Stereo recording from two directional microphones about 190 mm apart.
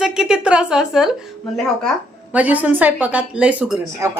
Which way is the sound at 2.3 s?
10° right (ahead or behind).